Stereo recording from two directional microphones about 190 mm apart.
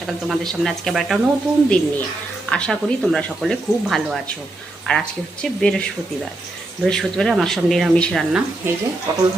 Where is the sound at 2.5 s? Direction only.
5° left (ahead or behind).